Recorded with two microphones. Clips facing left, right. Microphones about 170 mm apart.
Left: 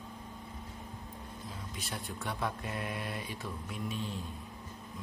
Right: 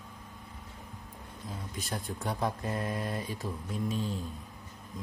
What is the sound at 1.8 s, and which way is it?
Speech, 45° right (ahead or behind).